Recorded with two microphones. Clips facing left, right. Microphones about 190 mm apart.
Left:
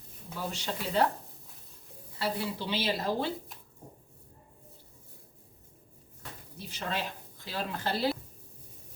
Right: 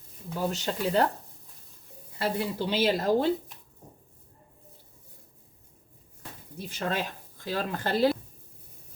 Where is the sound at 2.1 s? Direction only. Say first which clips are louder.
Right 4 dB; 45° right (ahead or behind).